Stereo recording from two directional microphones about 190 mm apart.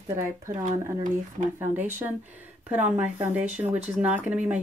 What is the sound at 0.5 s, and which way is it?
Speech, 40° right (ahead or behind).